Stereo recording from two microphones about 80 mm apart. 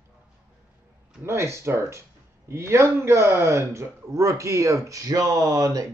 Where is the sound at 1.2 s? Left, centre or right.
Right.